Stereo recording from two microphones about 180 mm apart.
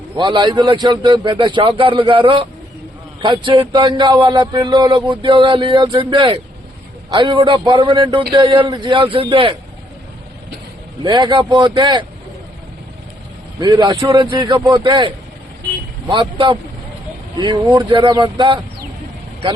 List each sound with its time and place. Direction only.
0.2 s a man's voice: 25° right (ahead or behind)
11.0 s a man's voice: 25° right (ahead or behind)
13.6 s a man's voice: 25° right (ahead or behind)